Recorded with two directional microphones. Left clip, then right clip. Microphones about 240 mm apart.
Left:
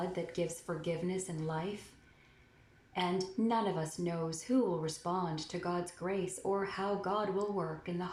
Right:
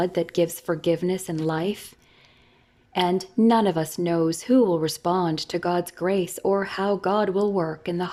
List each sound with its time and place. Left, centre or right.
0.1 s a woman's voice: right
2.9 s a woman's voice: right